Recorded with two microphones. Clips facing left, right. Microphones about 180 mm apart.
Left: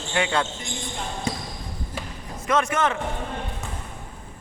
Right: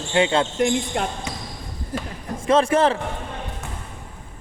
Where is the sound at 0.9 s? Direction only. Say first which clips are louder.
Right 9 dB; 70° right (ahead or behind).